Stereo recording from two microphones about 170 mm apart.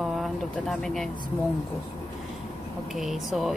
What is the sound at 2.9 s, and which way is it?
Speech, centre (ahead or behind).